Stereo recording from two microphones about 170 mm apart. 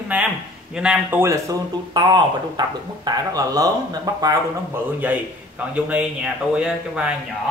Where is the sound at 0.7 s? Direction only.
5° right (ahead or behind).